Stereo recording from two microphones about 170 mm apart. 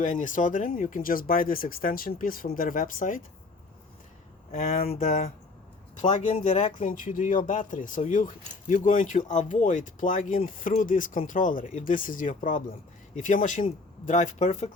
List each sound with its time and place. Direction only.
0.0 s speech: 45° left (ahead or behind)
4.5 s speech: 40° left (ahead or behind)